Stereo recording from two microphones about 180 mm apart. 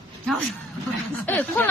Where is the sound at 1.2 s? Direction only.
10° left (ahead or behind).